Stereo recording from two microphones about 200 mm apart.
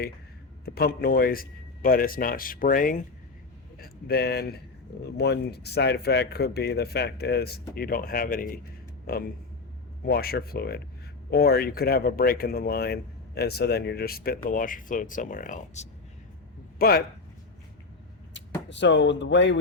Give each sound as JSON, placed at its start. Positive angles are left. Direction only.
{"t": 0.6, "sound": "speech", "side_deg": 50}
{"t": 16.7, "sound": "speech", "side_deg": 50}
{"t": 18.7, "sound": "speech", "side_deg": 65}